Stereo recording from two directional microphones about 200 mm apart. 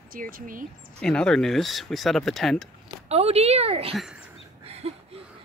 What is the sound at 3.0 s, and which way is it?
Speech, 30° right (ahead or behind).